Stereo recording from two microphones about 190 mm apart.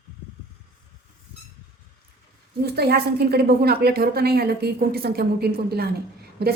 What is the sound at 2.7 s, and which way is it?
A woman's voice, 55° right (ahead or behind).